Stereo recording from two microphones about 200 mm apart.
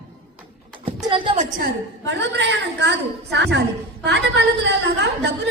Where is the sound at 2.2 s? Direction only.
60° right (ahead or behind).